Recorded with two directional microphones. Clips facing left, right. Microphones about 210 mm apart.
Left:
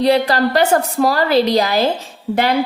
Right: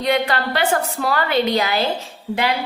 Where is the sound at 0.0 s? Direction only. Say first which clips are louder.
Left 6 dB; 35° left (ahead or behind).